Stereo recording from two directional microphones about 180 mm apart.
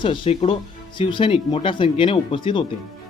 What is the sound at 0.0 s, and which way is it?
Speech, 30° left (ahead or behind).